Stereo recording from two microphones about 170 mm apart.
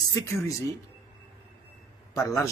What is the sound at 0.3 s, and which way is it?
Speech, 15° left (ahead or behind).